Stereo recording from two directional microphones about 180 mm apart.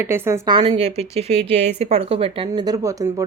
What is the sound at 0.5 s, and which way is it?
Speech, 30° right (ahead or behind).